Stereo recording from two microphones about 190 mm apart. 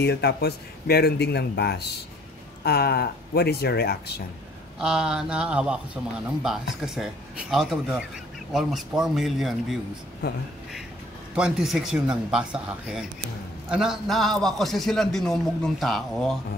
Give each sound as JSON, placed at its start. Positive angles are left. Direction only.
{"t": 0.0, "sound": "speech", "side_deg": 60}
{"t": 4.7, "sound": "a man's voice", "side_deg": -5}
{"t": 11.3, "sound": "a man's voice", "side_deg": -5}